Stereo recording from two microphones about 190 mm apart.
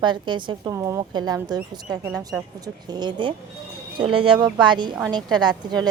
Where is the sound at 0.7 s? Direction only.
15° right (ahead or behind).